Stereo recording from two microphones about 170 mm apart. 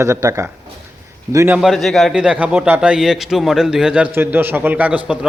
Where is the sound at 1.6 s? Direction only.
Centre (ahead or behind).